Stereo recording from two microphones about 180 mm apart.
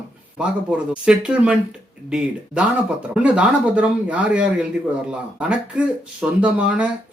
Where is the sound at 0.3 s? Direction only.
5° right (ahead or behind).